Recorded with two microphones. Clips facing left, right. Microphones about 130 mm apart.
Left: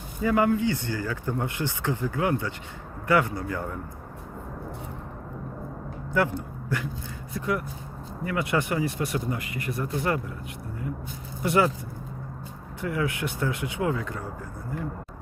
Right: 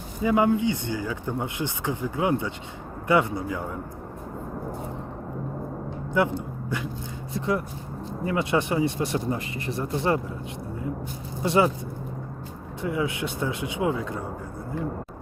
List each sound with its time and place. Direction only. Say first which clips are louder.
0.2 s speech: right 1 dB; 20° right (ahead or behind)
6.1 s speech: right 1 dB; 20° right (ahead or behind)
11.4 s speech: right 1 dB; 25° right (ahead or behind)
12.8 s speech: right 1 dB; 20° right (ahead or behind)